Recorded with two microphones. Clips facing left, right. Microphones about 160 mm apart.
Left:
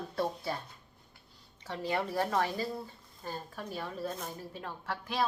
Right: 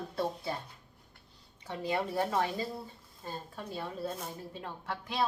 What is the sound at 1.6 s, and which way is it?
A woman's voice, 15° right (ahead or behind).